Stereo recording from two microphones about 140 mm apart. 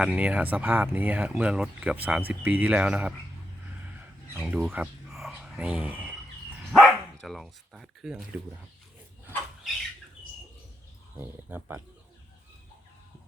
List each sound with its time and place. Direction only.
0.0 s speech: 10° right (ahead or behind)
4.4 s speech: 10° right (ahead or behind)
6.7 s dog: centre (ahead or behind)
11.2 s speech: 15° right (ahead or behind)